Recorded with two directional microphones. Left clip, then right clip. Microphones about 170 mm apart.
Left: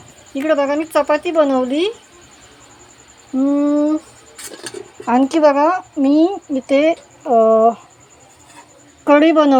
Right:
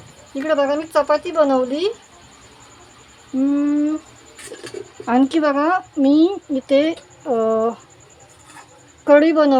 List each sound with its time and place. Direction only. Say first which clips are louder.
0.3 s a woman's voice: left 2 dB; 5° left (ahead or behind)
3.6 s a woman's voice: left 4 dB; 15° left (ahead or behind); by 7.8 s 5° right (ahead or behind)
9.0 s a woman's voice: left 1 dB; 15° left (ahead or behind)